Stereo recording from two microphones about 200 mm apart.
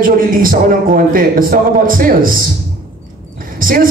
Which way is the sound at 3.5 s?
45° right (ahead or behind).